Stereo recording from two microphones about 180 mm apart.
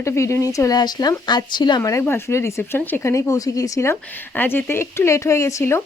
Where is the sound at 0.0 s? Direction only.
15° left (ahead or behind).